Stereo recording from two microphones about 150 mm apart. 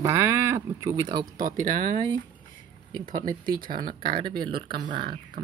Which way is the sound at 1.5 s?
65° right (ahead or behind).